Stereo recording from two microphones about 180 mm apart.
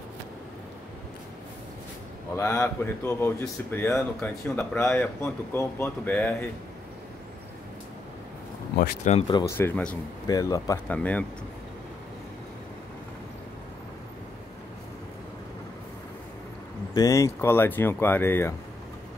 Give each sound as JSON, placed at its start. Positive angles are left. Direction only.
{"t": 2.3, "sound": "speech", "side_deg": 15}
{"t": 9.1, "sound": "speech", "side_deg": 40}
{"t": 9.6, "sound": "speech", "side_deg": 10}
{"t": 10.2, "sound": "speech", "side_deg": 20}
{"t": 16.9, "sound": "speech", "side_deg": 20}